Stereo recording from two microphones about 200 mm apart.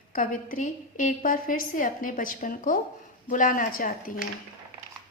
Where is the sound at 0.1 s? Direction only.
40° left (ahead or behind).